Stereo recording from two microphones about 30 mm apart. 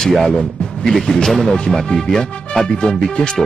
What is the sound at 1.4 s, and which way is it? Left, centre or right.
Speech, left.